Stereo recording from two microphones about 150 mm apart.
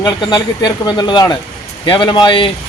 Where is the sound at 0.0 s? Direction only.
30° left (ahead or behind).